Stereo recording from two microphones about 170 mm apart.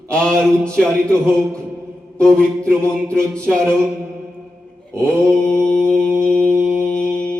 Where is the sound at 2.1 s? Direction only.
5° left (ahead or behind).